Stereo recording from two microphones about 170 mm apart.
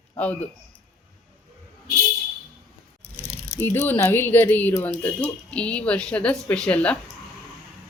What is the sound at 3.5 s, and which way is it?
Speech, 10° left (ahead or behind).